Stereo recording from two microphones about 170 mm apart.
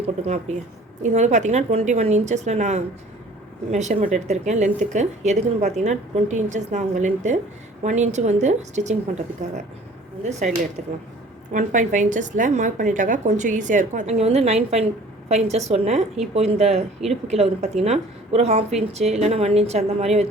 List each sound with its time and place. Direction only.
1.0 s speech: 45° right (ahead or behind)
10.8 s a woman's voice: 40° right (ahead or behind)